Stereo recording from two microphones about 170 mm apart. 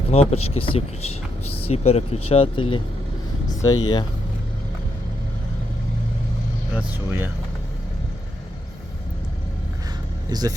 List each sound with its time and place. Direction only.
0.1 s speech: 35° left (ahead or behind); by 4.0 s 20° left (ahead or behind)
6.7 s speech: 10° right (ahead or behind)
10.2 s speech: 25° right (ahead or behind)